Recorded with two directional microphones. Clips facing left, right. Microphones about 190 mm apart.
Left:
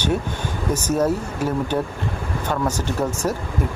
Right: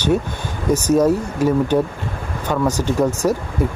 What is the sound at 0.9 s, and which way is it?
Speech, 10° right (ahead or behind).